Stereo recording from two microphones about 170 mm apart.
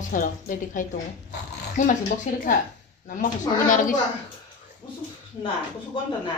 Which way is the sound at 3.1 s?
50° left (ahead or behind).